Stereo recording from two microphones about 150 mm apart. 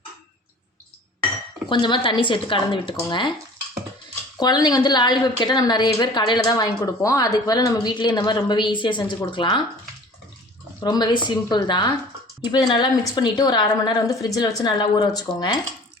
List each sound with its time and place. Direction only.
1.7 s a woman's voice: 30° left (ahead or behind)
4.4 s a woman's voice: 30° left (ahead or behind)
10.8 s a woman's voice: 30° left (ahead or behind)